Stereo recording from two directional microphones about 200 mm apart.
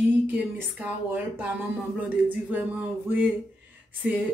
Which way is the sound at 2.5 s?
10° right (ahead or behind).